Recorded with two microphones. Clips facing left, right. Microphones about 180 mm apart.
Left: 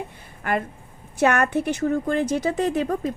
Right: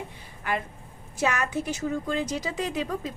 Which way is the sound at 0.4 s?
50° left (ahead or behind).